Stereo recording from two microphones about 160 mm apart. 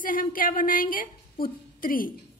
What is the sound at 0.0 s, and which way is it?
A woman's voice, 60° left (ahead or behind).